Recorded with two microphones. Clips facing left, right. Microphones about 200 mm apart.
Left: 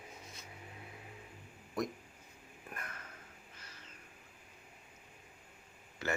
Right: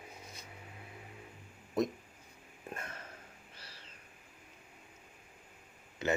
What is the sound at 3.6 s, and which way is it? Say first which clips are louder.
Owl: right 2 dB; 30° right (ahead or behind).